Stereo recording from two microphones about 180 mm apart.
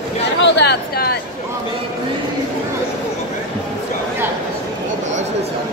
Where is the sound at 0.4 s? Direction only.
75° left (ahead or behind); by 1.2 s 60° left (ahead or behind).